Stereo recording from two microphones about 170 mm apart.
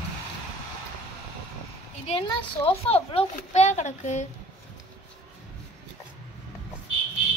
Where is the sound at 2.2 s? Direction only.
35° left (ahead or behind).